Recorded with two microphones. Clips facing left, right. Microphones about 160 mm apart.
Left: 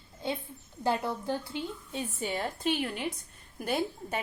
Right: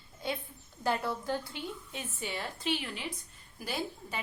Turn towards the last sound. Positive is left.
turn(degrees=55)  # may be behind; listen again after turning